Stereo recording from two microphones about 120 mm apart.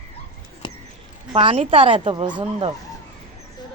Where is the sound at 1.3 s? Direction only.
50° right (ahead or behind).